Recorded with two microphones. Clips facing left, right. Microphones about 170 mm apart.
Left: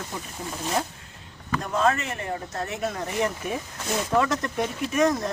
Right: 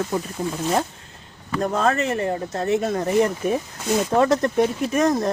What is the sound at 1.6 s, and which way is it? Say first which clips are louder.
Speech: right 3 dB; 40° right (ahead or behind).